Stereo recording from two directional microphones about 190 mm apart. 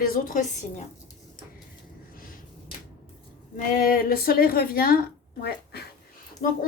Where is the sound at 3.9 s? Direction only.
50° left (ahead or behind).